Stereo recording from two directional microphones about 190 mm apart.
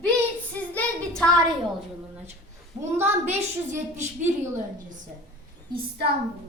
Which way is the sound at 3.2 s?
35° right (ahead or behind).